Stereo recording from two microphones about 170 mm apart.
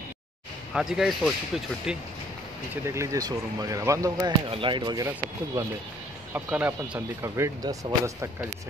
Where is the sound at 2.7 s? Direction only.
15° right (ahead or behind).